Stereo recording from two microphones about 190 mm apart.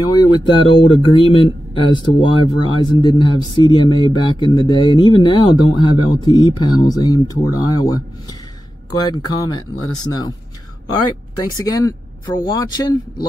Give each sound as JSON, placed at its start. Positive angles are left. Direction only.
{"t": 0.0, "sound": "speech", "side_deg": 20}
{"t": 11.4, "sound": "speech", "side_deg": 20}